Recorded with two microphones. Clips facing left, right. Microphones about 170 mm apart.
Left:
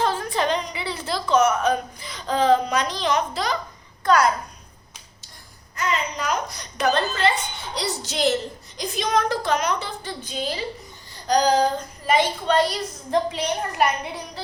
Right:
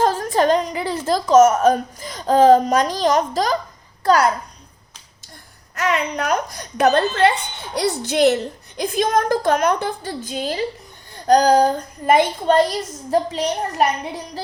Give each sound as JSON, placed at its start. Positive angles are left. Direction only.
{"t": 0.0, "sound": "speech", "side_deg": -45}
{"t": 5.7, "sound": "a child's voice", "side_deg": -75}
{"t": 8.8, "sound": "a child's voice", "side_deg": -50}